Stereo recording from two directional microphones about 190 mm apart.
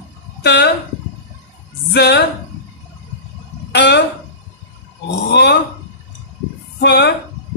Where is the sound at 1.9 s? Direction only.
60° left (ahead or behind).